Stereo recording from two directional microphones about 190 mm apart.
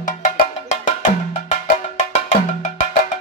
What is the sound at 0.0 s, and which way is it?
Cowbell, 40° left (ahead or behind).